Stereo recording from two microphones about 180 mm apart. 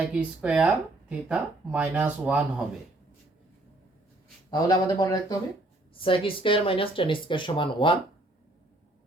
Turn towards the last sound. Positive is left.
turn(degrees=25)  # may be behind; listen again after turning